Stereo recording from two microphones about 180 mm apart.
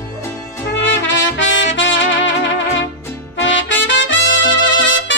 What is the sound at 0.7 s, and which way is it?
Trumpet, 90° left.